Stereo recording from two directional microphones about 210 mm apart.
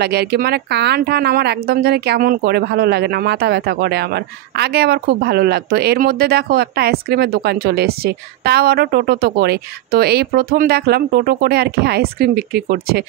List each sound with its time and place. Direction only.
0.0 s a woman's voice: 50° right (ahead or behind)